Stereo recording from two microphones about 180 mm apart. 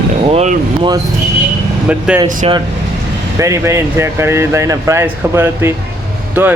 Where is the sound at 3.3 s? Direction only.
15° right (ahead or behind).